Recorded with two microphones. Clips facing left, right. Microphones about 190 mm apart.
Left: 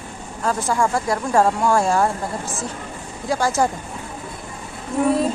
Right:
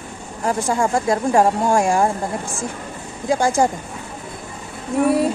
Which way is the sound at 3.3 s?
15° right (ahead or behind).